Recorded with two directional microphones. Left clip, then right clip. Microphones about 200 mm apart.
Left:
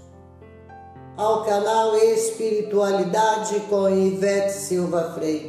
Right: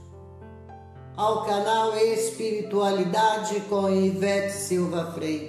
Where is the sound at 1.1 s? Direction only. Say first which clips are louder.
Left 3 dB; 15° right (ahead or behind).